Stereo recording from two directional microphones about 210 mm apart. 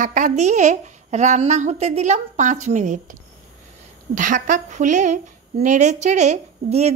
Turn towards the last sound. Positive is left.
turn(degrees=-30)  # may be behind; listen again after turning